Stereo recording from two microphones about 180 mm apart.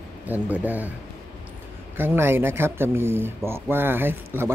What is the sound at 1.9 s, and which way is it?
Speech, 10° right (ahead or behind).